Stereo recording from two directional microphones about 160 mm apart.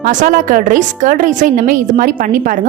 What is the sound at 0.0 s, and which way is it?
A woman's voice, 55° right (ahead or behind).